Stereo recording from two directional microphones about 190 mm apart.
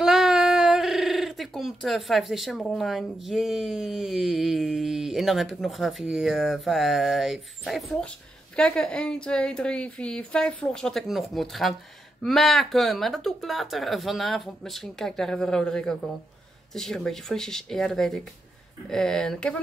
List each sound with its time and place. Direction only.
0.0 s speech: centre (ahead or behind)